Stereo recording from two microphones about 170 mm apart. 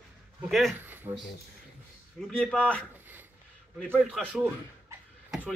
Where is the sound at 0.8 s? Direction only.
10° right (ahead or behind).